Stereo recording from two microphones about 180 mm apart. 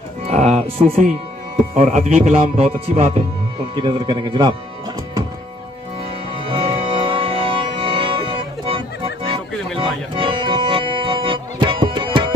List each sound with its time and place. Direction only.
0.3 s music: 40° right (ahead or behind)
1.8 s a man's voice: 40° right (ahead or behind)
6.4 s music: 30° right (ahead or behind)